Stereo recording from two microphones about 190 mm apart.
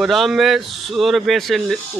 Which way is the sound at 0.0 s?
Centre (ahead or behind).